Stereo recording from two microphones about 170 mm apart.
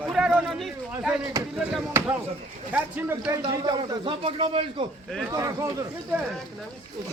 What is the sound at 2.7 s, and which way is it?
A man's voice, 10° right (ahead or behind).